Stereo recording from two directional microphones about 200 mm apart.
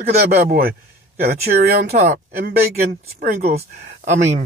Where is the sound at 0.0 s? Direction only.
50° right (ahead or behind).